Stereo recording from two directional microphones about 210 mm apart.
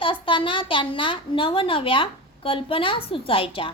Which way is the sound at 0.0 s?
25° left (ahead or behind).